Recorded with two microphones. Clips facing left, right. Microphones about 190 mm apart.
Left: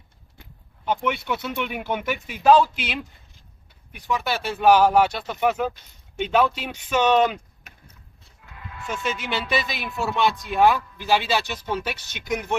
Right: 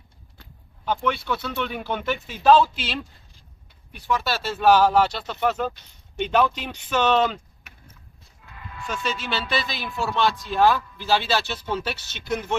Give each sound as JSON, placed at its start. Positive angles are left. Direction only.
{"t": 0.4, "sound": "speech", "side_deg": 20}
{"t": 8.8, "sound": "speech", "side_deg": 20}